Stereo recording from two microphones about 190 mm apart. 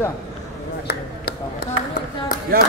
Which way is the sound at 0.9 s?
55° left (ahead or behind).